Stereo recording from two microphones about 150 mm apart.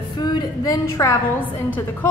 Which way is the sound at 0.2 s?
30° left (ahead or behind).